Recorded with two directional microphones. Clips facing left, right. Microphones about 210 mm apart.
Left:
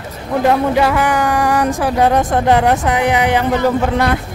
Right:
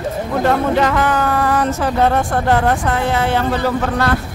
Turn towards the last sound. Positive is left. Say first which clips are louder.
# left 3 dB
turn(degrees=15)  # may be behind; listen again after turning